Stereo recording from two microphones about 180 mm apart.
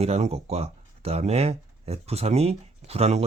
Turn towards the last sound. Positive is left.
turn(degrees=-35)  # may be behind; listen again after turning